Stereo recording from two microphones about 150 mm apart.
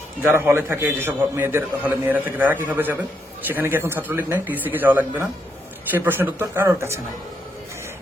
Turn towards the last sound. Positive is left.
turn(degrees=-20)  # may be behind; listen again after turning